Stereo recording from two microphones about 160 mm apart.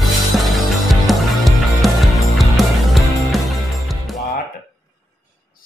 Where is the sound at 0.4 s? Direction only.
Centre (ahead or behind).